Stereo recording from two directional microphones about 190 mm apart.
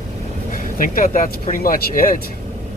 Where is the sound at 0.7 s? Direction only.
45° left (ahead or behind).